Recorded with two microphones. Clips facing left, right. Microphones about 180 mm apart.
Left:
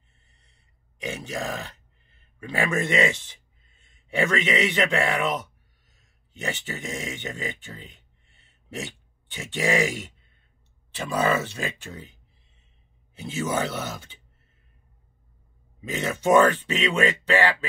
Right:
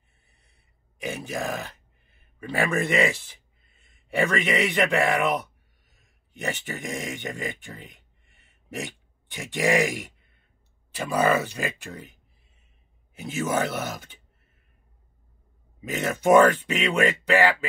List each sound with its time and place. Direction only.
0.2 s gasp: 10° right (ahead or behind)
1.0 s speech: 10° right (ahead or behind)
15.8 s speech: 10° right (ahead or behind)